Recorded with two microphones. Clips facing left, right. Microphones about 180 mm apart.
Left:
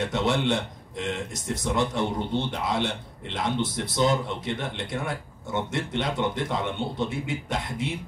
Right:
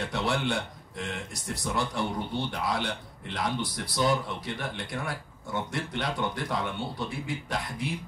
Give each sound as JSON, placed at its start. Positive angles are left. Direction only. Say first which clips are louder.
{"t": 0.0, "sound": "speech", "louder": "left 4 dB", "side_deg": 20}